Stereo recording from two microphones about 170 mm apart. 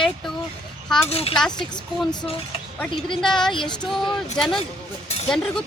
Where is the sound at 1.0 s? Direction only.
35° left (ahead or behind).